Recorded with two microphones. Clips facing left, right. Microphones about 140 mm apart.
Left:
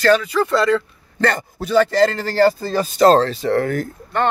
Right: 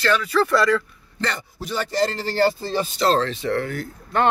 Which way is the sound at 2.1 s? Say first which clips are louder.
Left 5 dB; 45° left (ahead or behind).